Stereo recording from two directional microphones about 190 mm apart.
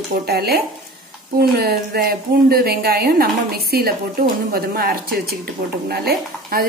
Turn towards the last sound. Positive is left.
turn(degrees=-50)  # may be behind; listen again after turning